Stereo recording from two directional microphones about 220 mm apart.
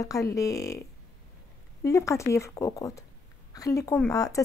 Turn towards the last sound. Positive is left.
turn(degrees=15)  # may be behind; listen again after turning